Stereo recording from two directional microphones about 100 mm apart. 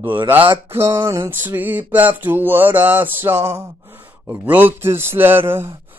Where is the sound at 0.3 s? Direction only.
20° right (ahead or behind).